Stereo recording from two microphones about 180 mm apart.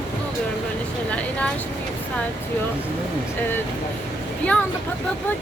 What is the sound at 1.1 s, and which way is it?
Speech, 5° left (ahead or behind).